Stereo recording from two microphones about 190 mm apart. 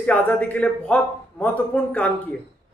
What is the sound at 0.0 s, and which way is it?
A man's voice, 10° left (ahead or behind).